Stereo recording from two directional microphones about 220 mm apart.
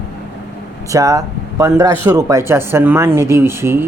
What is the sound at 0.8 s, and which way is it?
Speech, 15° right (ahead or behind).